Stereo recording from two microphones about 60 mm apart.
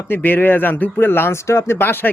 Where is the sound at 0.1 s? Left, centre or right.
Left.